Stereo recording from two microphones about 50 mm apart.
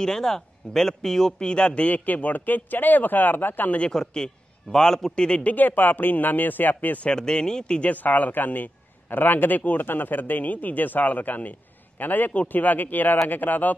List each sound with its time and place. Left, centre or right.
0.0 s a man's voice: centre
1.8 s speech: left
3.9 s a man's voice: centre
5.5 s speech: left
7.1 s a man's voice: centre
7.9 s speech: left